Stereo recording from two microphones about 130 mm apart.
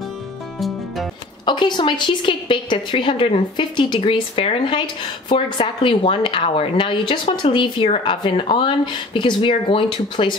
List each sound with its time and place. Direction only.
0.6 s music: centre (ahead or behind)
1.4 s a woman's voice: 35° left (ahead or behind)